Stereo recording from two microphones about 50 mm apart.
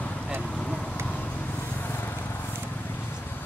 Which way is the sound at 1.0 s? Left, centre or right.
Left.